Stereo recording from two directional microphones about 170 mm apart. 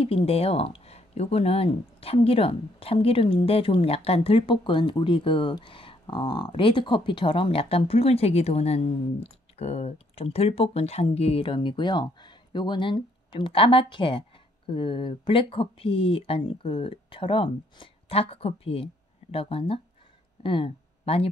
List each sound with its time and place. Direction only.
0.0 s speech: 35° left (ahead or behind)